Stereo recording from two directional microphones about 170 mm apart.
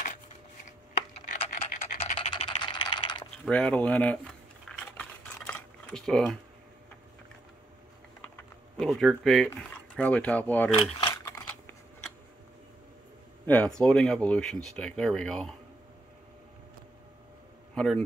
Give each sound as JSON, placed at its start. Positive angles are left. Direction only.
{"t": 1.7, "sound": "scratch", "side_deg": 45}
{"t": 2.1, "sound": "typing", "side_deg": 30}
{"t": 3.4, "sound": "typing", "side_deg": 5}
{"t": 8.7, "sound": "speech", "side_deg": 5}
{"t": 10.7, "sound": "speech", "side_deg": 35}
{"t": 11.1, "sound": "typing", "side_deg": 15}
{"t": 13.5, "sound": "speech", "side_deg": 5}
{"t": 17.7, "sound": "a man's voice", "side_deg": 5}